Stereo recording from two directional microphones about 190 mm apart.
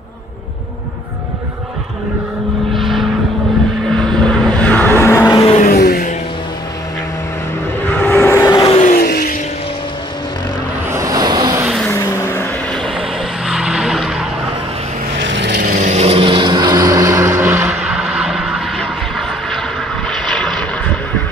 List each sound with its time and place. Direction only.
2.7 s vehicle: centre (ahead or behind)
5.3 s vehicle: 25° left (ahead or behind)
5.6 s vehicle: 55° left (ahead or behind)
7.9 s vehicle: 10° left (ahead or behind)
8.7 s vehicle: 45° left (ahead or behind)
10.9 s vehicle: 15° right (ahead or behind)
11.8 s vehicle: 15° left (ahead or behind)
12.7 s vehicle: 5° left (ahead or behind)
15.1 s vehicle: 75° right (ahead or behind); by 20.6 s 5° left (ahead or behind)